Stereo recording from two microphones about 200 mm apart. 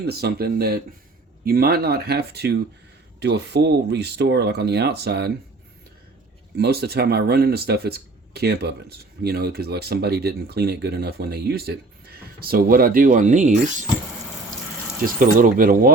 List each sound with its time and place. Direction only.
0.0 s speech: 55° right (ahead or behind)
6.6 s speech: 50° right (ahead or behind)
15.0 s speech: 45° right (ahead or behind)